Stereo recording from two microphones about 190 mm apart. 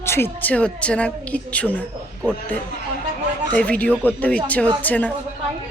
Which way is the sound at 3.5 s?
5° left (ahead or behind).